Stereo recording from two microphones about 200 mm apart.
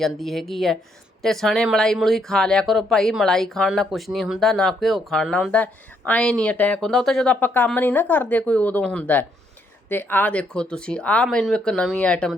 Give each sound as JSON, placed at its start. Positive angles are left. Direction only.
{"t": 0.0, "sound": "speech", "side_deg": 0}